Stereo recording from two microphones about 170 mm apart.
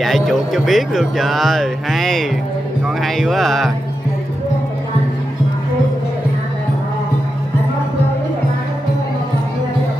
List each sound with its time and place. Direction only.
0.0 s speech: centre (ahead or behind)